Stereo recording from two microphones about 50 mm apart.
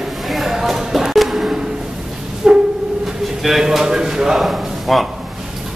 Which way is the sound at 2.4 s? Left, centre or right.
Centre.